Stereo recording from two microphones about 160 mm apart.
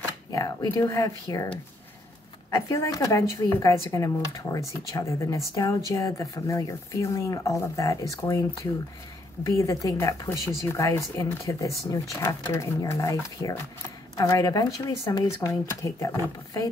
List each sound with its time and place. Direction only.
0.3 s speech: 25° left (ahead or behind)
2.5 s speech: 20° left (ahead or behind)
9.4 s speech: 20° left (ahead or behind)